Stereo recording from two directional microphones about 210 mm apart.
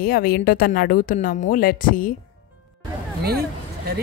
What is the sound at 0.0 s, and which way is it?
Speech, 45° left (ahead or behind).